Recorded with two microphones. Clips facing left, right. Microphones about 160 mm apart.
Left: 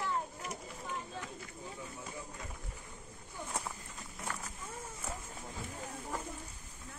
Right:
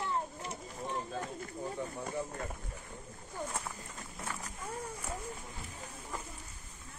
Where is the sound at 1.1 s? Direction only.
45° right (ahead or behind).